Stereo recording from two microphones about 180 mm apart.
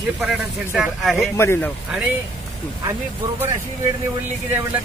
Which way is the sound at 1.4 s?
10° left (ahead or behind).